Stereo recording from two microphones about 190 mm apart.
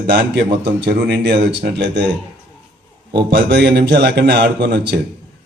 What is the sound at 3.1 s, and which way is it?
A man's voice, 60° right (ahead or behind).